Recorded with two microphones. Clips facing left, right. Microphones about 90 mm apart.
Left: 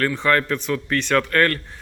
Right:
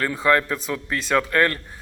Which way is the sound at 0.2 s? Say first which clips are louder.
Even; 15° right (ahead or behind).